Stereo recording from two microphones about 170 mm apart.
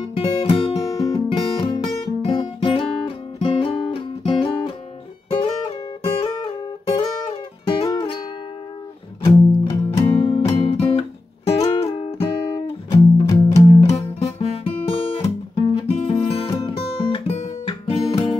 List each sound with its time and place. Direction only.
0.0 s music: 30° left (ahead or behind)
12.9 s music: 20° left (ahead or behind)
14.4 s guitar: 35° left (ahead or behind)
15.9 s music: 35° left (ahead or behind)